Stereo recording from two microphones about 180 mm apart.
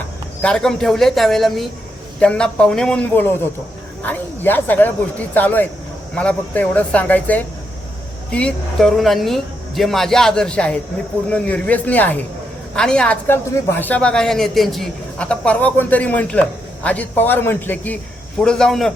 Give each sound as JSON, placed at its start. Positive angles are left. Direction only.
{"t": 0.4, "sound": "a woman's voice", "side_deg": 5}